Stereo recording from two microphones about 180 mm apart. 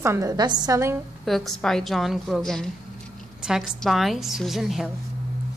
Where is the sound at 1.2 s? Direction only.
Centre (ahead or behind).